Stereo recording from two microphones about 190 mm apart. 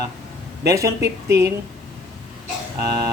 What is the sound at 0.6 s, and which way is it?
Speech, 15° right (ahead or behind).